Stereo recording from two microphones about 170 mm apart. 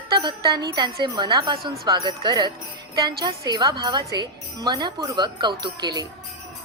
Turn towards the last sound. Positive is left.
turn(degrees=-25)  # may be behind; listen again after turning